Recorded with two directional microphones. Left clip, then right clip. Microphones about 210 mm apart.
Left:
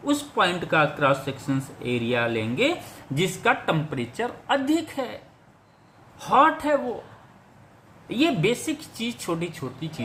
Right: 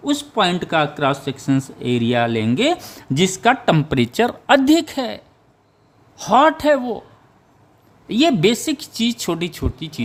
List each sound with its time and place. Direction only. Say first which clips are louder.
0.0 s a woman's voice: right 4 dB; 45° right (ahead or behind)
8.0 s a woman's voice: right 7 dB; 55° right (ahead or behind)